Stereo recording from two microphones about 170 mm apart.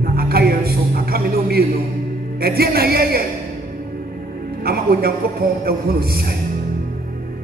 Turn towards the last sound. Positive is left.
turn(degrees=-65)  # may be behind; listen again after turning